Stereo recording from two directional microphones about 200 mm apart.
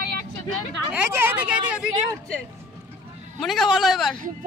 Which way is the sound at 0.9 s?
10° right (ahead or behind).